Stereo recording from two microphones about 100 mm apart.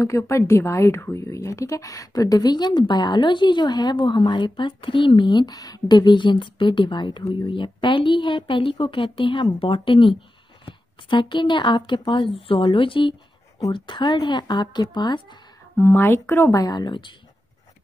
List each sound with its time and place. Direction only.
0.0 s a woman's voice: 30° left (ahead or behind); by 15.3 s 45° left (ahead or behind)
15.8 s speech: 20° left (ahead or behind); by 17.1 s 50° left (ahead or behind)